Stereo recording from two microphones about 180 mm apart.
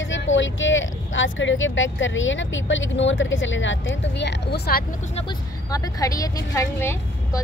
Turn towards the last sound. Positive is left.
turn(degrees=15)  # may be behind; listen again after turning